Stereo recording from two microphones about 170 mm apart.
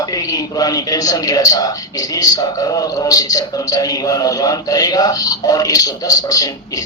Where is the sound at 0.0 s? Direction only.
20° left (ahead or behind).